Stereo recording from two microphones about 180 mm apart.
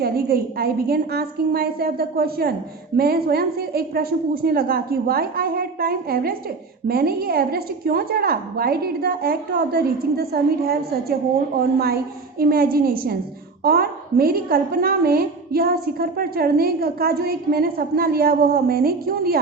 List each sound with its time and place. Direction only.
0.0 s a woman's voice: 55° right (ahead or behind)
12.4 s a woman's voice: 55° right (ahead or behind)